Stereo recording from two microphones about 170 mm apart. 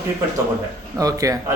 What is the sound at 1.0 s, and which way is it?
Speech, 20° right (ahead or behind).